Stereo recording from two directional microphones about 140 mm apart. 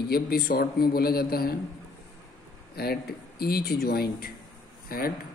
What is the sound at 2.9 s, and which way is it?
Speech, 90° left.